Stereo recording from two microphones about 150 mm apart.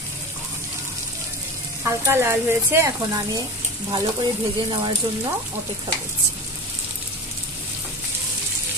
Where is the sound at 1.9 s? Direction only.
15° right (ahead or behind).